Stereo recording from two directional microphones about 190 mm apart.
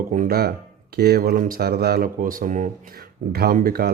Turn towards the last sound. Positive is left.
turn(degrees=-50)  # may be behind; listen again after turning